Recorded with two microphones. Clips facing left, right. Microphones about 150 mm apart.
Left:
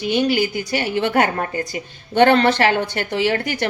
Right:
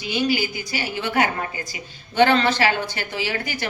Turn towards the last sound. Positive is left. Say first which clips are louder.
# left 7 dB
turn(degrees=60)  # may be behind; listen again after turning